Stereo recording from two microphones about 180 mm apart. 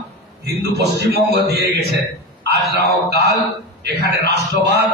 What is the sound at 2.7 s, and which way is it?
A man's voice, 65° right (ahead or behind).